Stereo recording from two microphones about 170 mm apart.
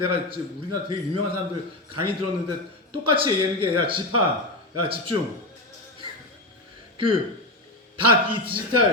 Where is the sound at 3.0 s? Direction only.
30° right (ahead or behind).